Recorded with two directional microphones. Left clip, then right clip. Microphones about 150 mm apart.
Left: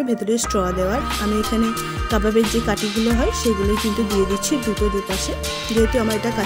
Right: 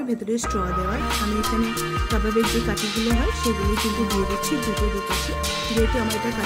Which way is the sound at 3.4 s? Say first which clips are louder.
Left 3 dB; centre (ahead or behind).